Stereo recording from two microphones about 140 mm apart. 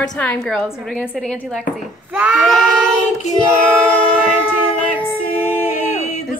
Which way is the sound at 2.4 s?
Centre (ahead or behind).